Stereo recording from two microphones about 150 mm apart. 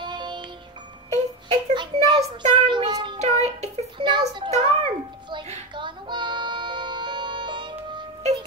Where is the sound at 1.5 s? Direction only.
35° right (ahead or behind).